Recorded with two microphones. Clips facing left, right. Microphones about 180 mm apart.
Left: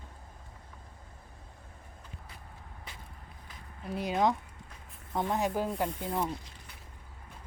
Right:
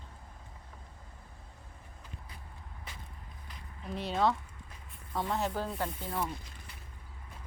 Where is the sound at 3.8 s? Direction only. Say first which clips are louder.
Left 2 dB; 10° left (ahead or behind).